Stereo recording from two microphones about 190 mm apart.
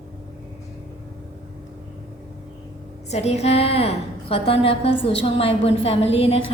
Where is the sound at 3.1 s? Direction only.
35° left (ahead or behind).